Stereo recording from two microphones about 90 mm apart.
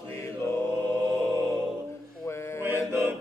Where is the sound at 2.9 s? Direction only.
30° right (ahead or behind).